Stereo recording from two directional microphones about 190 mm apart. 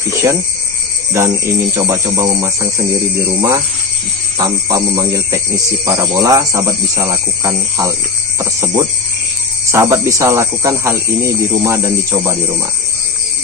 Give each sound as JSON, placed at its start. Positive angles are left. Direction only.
{"t": 0.1, "sound": "speech", "side_deg": -15}